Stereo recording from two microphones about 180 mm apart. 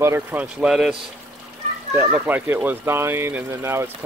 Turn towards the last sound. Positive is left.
turn(degrees=-15)  # may be behind; listen again after turning